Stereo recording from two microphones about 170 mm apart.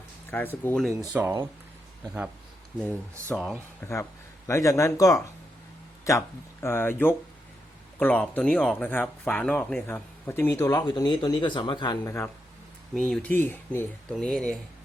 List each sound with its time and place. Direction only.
0.3 s speech: 10° left (ahead or behind)
1.1 s speech: 10° right (ahead or behind)
3.2 s speech: centre (ahead or behind)
3.8 s speech: 15° left (ahead or behind)
12.9 s speech: 5° left (ahead or behind)